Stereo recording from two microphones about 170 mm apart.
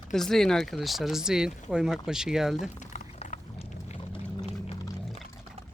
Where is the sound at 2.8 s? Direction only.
45° left (ahead or behind).